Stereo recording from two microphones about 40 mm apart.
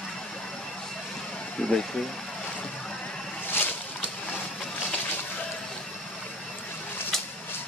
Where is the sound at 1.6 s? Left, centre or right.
Left.